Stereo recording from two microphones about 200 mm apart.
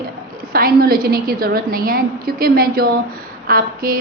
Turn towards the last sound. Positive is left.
turn(degrees=-45)  # may be behind; listen again after turning